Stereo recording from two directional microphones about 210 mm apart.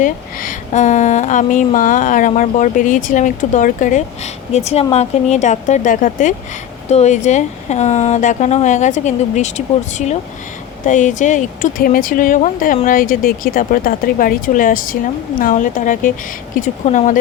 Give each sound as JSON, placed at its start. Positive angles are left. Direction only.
{"t": 0.0, "sound": "speech", "side_deg": 40}